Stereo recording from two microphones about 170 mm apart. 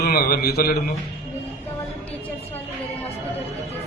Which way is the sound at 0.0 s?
65° left (ahead or behind).